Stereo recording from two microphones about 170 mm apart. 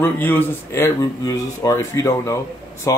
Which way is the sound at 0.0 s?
10° left (ahead or behind).